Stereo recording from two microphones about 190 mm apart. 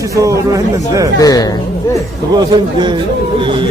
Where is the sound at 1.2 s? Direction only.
20° left (ahead or behind).